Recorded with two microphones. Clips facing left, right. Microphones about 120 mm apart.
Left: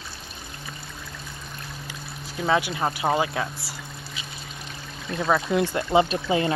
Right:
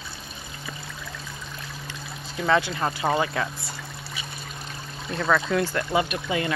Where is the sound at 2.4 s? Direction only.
10° left (ahead or behind).